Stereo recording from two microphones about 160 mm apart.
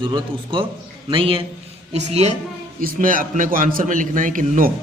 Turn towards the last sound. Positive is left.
turn(degrees=-55)  # may be behind; listen again after turning